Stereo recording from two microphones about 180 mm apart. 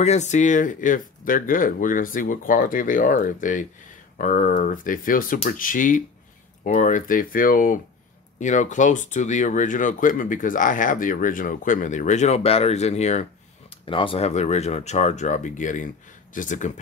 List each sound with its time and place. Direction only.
0.0 s speech: 40° left (ahead or behind)